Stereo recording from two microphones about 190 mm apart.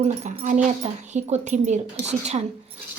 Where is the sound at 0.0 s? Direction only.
40° right (ahead or behind).